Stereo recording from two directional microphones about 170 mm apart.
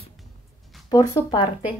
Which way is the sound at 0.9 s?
25° left (ahead or behind).